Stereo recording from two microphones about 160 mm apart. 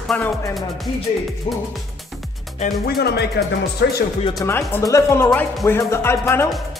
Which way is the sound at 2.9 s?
90° left.